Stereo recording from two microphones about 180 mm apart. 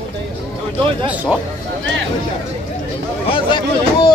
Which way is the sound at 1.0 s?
10° right (ahead or behind).